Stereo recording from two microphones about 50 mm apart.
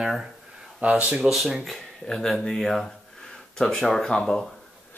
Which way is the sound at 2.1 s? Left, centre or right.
Centre.